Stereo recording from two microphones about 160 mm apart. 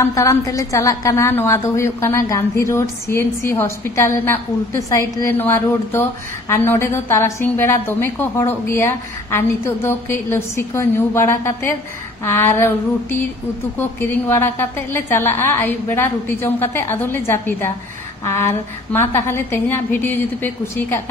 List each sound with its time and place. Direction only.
0.0 s a woman's voice: 20° left (ahead or behind)